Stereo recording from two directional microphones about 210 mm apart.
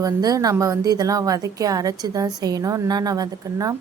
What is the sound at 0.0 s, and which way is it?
Speech, 15° right (ahead or behind).